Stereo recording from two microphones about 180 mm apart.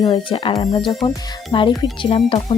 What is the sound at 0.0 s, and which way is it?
Speech, 25° left (ahead or behind).